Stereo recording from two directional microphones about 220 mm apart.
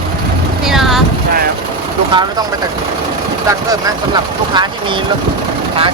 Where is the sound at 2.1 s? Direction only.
20° right (ahead or behind).